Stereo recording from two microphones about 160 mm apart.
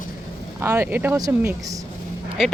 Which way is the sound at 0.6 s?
15° right (ahead or behind).